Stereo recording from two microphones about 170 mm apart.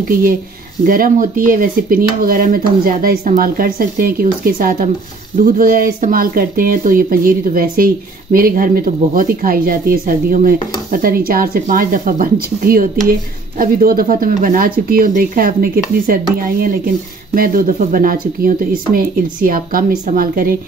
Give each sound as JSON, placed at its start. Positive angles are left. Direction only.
{"t": 0.1, "sound": "speech", "side_deg": -55}